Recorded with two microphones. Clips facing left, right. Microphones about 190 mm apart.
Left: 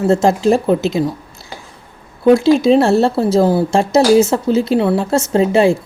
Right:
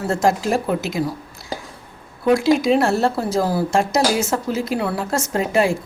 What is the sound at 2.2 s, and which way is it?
Speech, 25° left (ahead or behind).